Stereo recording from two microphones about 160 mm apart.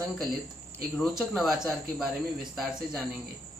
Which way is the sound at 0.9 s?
Centre (ahead or behind).